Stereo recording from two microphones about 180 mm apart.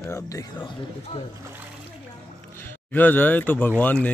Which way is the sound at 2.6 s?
10° left (ahead or behind).